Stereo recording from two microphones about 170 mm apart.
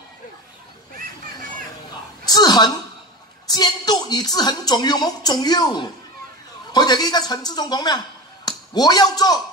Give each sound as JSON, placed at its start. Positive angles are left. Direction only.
{"t": 2.2, "sound": "a woman's voice", "side_deg": 25}